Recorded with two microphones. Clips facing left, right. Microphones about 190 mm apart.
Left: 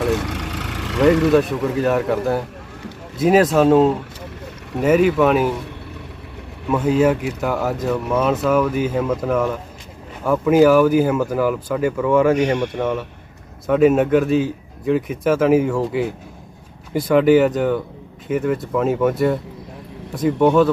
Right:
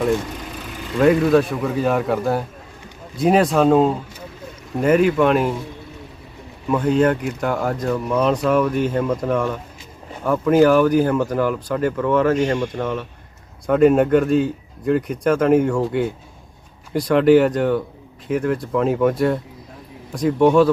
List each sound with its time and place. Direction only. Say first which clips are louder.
0.1 s vehicle: even; 80° left
1.3 s speech: left 1 dB; centre (ahead or behind)
6.7 s speech: left 1 dB; 5° left (ahead or behind)